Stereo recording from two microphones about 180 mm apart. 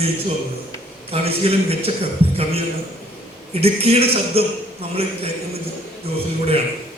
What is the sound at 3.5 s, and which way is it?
Speech, 35° right (ahead or behind).